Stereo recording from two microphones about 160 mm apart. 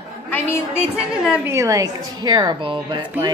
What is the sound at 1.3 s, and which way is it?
A woman's voice, 15° right (ahead or behind).